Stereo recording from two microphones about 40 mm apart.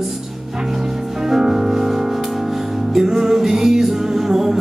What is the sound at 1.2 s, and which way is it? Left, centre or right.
Music, centre.